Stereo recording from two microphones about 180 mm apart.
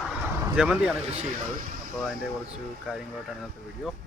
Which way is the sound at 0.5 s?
5° right (ahead or behind).